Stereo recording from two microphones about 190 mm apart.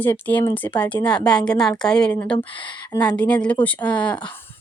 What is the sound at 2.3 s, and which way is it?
Speech, 25° left (ahead or behind).